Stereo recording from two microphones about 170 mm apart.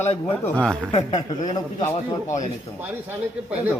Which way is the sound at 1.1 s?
25° left (ahead or behind).